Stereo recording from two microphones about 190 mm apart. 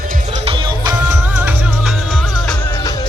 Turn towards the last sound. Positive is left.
turn(degrees=0)  # may be behind; listen again after turning